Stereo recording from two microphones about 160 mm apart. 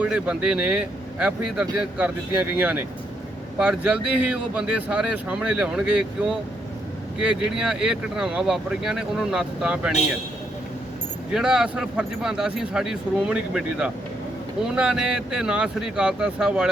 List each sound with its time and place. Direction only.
0.0 s speech: 5° right (ahead or behind)
11.3 s speech: 5° right (ahead or behind)